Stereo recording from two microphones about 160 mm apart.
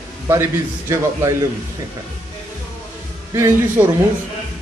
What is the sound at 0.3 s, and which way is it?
A man's voice, 20° right (ahead or behind).